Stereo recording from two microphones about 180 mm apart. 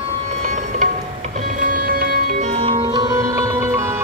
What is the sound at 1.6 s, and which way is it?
Music, 55° right (ahead or behind).